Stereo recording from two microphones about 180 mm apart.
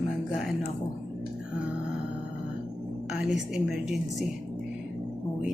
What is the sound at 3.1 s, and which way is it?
Music, centre (ahead or behind).